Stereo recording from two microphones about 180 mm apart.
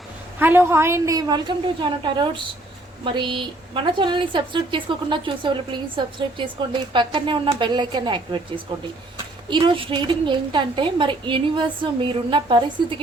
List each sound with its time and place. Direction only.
0.3 s a woman's voice: 10° right (ahead or behind)